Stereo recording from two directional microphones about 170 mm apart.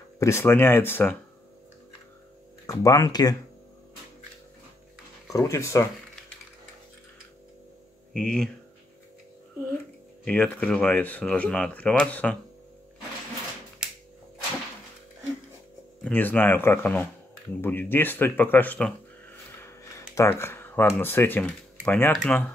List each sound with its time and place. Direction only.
0.2 s speech: 15° left (ahead or behind)
2.6 s speech: 20° left (ahead or behind)
5.3 s speech: 15° left (ahead or behind)
8.2 s speech: 5° left (ahead or behind)
10.2 s speech: 5° left (ahead or behind)
16.0 s speech: 10° left (ahead or behind)
19.6 s a sound: 15° left (ahead or behind)
21.8 s speech: 10° left (ahead or behind)
22.1 s speech: centre (ahead or behind)